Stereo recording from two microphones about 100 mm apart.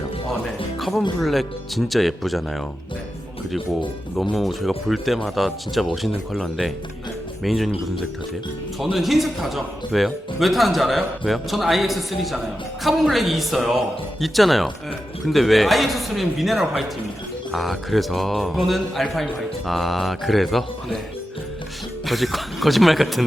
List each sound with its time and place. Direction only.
0.8 s a man's voice: centre (ahead or behind)
4.2 s a man's voice: centre (ahead or behind)
8.8 s a man's voice: centre (ahead or behind)
22.0 s a man's voice: centre (ahead or behind)